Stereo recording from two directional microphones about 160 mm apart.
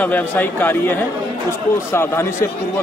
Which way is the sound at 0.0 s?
10° left (ahead or behind).